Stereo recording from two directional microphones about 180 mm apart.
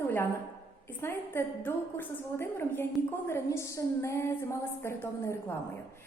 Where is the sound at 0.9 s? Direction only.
15° left (ahead or behind).